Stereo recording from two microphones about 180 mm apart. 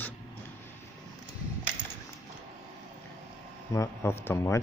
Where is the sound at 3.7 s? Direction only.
15° left (ahead or behind).